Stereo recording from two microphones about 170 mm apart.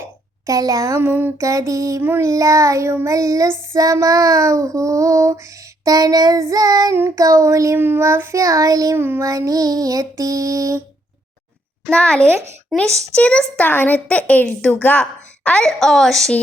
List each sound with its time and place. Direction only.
0.4 s a sound: 20° right (ahead or behind)
3.7 s child singing: 20° right (ahead or behind)
11.9 s a woman's voice: 5° left (ahead or behind)